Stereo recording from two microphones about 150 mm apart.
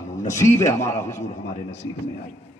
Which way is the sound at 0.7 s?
20° left (ahead or behind).